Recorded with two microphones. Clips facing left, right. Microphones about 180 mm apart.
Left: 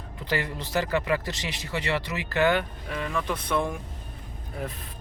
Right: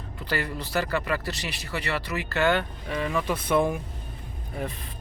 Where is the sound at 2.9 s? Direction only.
5° right (ahead or behind).